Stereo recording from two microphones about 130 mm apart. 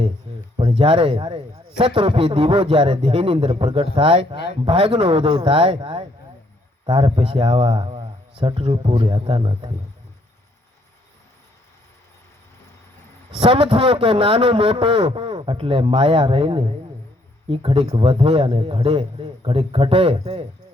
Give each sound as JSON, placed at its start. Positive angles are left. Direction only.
{"t": 0.5, "sound": "a man's voice", "side_deg": -40}
{"t": 13.3, "sound": "a man's voice", "side_deg": -45}